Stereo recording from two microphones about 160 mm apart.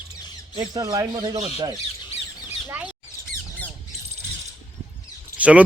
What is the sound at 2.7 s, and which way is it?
Bird, 10° right (ahead or behind).